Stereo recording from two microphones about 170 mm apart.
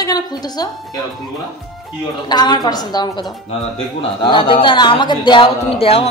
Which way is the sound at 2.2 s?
25° left (ahead or behind).